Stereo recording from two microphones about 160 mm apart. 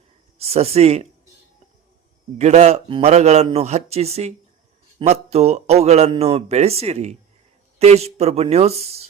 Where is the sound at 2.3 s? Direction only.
45° right (ahead or behind).